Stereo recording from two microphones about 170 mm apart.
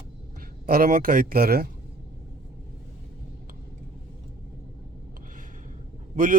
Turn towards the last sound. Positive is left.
turn(degrees=-50)  # may be behind; listen again after turning